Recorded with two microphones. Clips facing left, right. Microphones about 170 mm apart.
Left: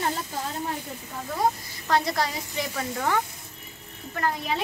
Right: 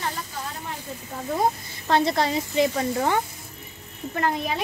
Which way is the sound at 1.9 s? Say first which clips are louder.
Right 3 dB; 25° right (ahead or behind).